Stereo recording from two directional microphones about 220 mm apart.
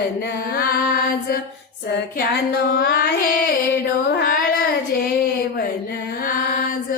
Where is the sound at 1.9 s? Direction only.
50° left (ahead or behind).